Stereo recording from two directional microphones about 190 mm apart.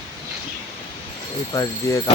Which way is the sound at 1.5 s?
15° left (ahead or behind).